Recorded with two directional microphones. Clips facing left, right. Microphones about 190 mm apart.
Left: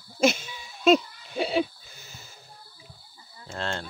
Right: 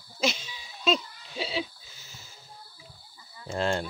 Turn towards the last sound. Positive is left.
turn(degrees=-10)  # may be behind; listen again after turning